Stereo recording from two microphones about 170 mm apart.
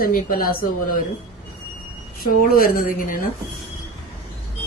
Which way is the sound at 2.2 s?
60° left (ahead or behind).